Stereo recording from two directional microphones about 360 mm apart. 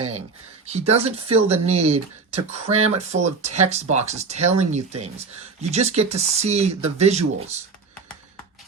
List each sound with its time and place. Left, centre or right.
0.7 s speech: centre